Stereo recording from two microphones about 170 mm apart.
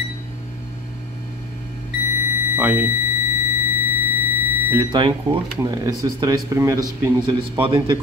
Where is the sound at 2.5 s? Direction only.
10° right (ahead or behind).